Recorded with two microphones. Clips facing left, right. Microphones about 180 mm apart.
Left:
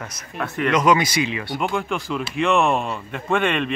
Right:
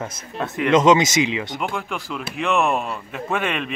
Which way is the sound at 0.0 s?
25° right (ahead or behind).